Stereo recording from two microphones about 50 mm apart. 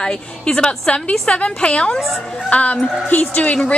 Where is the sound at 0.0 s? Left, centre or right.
Centre; by 3.5 s left.